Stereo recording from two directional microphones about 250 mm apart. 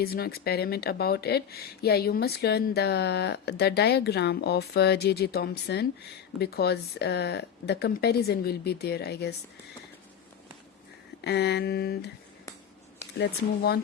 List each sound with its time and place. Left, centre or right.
0.0 s speech: left
11.2 s speech: left